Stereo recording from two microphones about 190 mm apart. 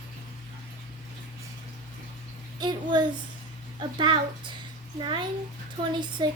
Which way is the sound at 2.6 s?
20° right (ahead or behind).